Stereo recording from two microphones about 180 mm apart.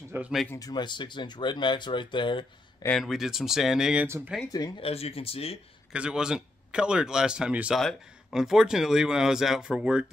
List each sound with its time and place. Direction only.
0.1 s speech: 5° right (ahead or behind)
0.5 s speech: 20° left (ahead or behind)
3.0 s speech: centre (ahead or behind)
4.5 s speech: 20° left (ahead or behind)
4.8 s speech: 35° left (ahead or behind)
5.9 s speech: 5° right (ahead or behind)